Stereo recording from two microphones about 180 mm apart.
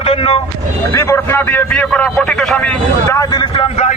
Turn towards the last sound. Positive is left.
turn(degrees=35)  # may be behind; listen again after turning